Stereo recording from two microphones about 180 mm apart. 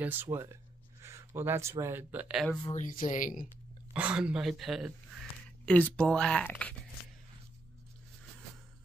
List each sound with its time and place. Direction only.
0.0 s speech: 10° right (ahead or behind)
2.6 s speech: 40° left (ahead or behind)
3.9 s a man's voice: 5° right (ahead or behind)